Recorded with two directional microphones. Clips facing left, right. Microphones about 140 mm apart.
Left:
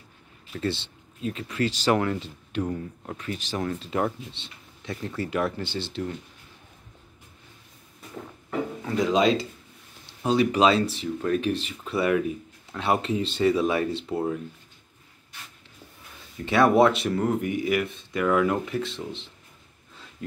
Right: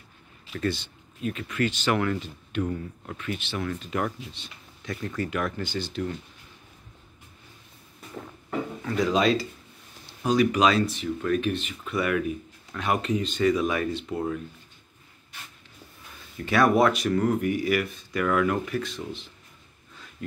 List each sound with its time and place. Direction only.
0.5 s speech: 25° left (ahead or behind)
8.8 s speech: 20° left (ahead or behind)
16.4 s speech: 25° left (ahead or behind)
20.2 s dog: 25° left (ahead or behind)